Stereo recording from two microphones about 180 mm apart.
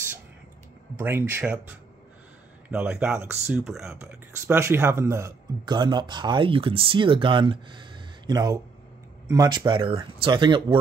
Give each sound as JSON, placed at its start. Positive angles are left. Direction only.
{"t": 0.9, "sound": "speech", "side_deg": -15}
{"t": 2.7, "sound": "speech", "side_deg": -5}
{"t": 4.0, "sound": "speech", "side_deg": -15}